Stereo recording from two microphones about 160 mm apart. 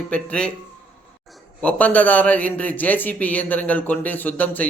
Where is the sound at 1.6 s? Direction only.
10° left (ahead or behind).